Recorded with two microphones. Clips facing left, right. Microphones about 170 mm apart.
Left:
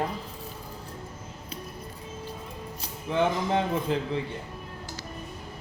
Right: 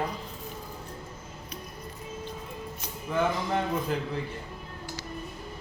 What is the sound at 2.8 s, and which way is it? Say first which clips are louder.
Speech: left 2 dB; 25° left (ahead or behind).